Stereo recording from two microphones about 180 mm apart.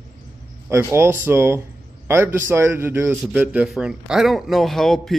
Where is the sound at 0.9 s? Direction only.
15° right (ahead or behind).